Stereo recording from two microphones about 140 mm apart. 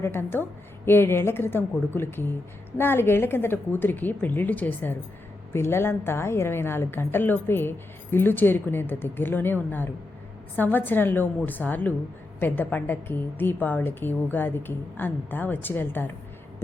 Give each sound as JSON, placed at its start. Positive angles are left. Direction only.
{"t": 0.0, "sound": "a woman's voice", "side_deg": 15}